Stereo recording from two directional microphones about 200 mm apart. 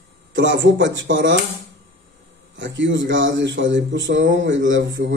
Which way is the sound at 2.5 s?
65° right (ahead or behind).